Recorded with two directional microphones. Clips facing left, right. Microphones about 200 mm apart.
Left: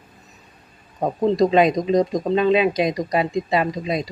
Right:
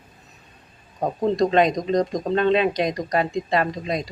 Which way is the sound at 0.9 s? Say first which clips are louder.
Left 2 dB; 5° left (ahead or behind).